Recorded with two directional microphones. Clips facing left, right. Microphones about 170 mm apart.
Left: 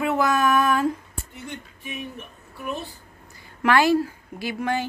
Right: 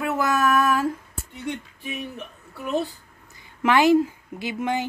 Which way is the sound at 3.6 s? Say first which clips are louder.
Right 2 dB; 20° right (ahead or behind).